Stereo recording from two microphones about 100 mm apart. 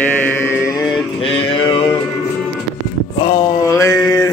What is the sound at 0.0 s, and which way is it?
Chant, 20° left (ahead or behind).